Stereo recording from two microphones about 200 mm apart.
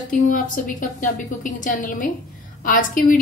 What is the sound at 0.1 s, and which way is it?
A woman's voice, 40° left (ahead or behind).